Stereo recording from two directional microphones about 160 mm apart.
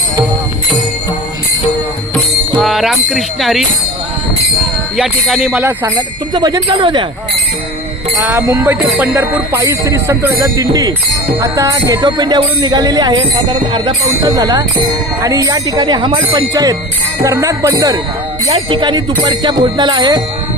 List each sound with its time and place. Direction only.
2.6 s speech: centre (ahead or behind)
4.9 s jingle bell: centre (ahead or behind)
6.3 s speech: 25° right (ahead or behind)
8.2 s jingle bell: 10° right (ahead or behind)
11.3 s speech: 20° right (ahead or behind)